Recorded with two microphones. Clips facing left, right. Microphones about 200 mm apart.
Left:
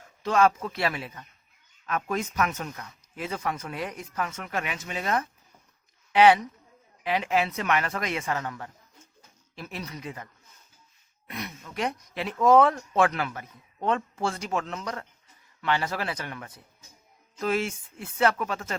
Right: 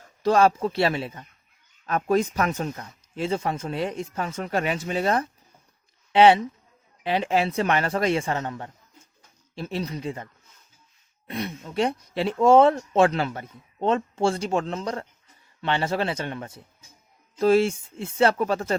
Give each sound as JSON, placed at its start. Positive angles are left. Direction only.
{"t": 0.2, "sound": "speech", "side_deg": -35}
{"t": 11.3, "sound": "speech", "side_deg": -30}